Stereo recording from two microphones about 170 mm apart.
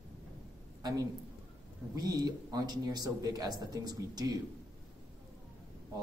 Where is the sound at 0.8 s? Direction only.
20° right (ahead or behind).